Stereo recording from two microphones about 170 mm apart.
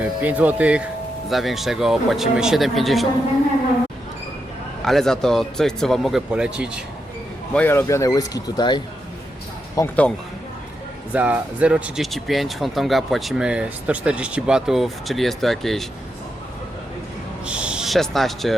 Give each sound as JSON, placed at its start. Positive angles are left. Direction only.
{"t": 0.2, "sound": "speech", "side_deg": -10}
{"t": 4.9, "sound": "speech", "side_deg": 0}
{"t": 7.5, "sound": "speech", "side_deg": 10}
{"t": 9.7, "sound": "speech", "side_deg": 10}
{"t": 11.1, "sound": "speech", "side_deg": -10}
{"t": 17.4, "sound": "a sound", "side_deg": -5}